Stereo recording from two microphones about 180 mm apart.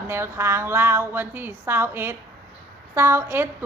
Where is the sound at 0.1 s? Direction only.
15° right (ahead or behind).